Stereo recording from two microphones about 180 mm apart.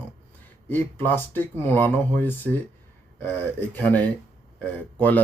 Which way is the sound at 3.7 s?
10° left (ahead or behind).